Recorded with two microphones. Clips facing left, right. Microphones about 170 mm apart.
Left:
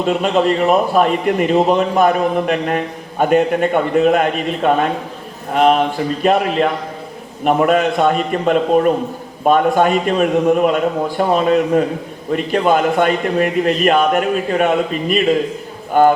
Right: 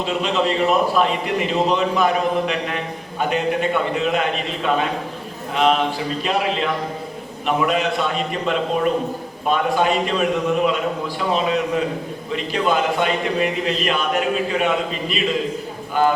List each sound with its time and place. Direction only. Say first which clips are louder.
0.0 s a man's voice: left 6 dB; 50° left (ahead or behind)